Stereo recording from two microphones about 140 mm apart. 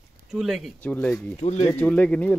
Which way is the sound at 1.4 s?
50° left (ahead or behind).